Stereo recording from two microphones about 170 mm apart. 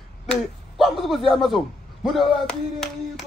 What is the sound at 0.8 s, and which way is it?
A man's voice, centre (ahead or behind).